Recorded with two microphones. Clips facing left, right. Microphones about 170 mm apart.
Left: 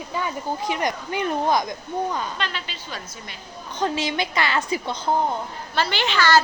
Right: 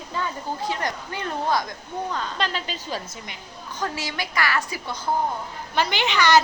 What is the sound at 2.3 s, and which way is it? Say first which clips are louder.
Speech: right 3 dB; 40° right (ahead or behind).